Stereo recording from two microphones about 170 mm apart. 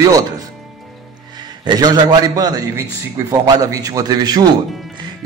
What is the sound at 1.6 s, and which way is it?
A man's voice, 25° right (ahead or behind).